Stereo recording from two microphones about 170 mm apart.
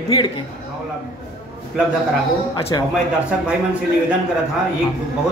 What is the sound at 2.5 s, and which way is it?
Speech, 25° left (ahead or behind).